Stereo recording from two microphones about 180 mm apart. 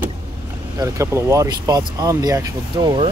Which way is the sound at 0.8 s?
15° right (ahead or behind).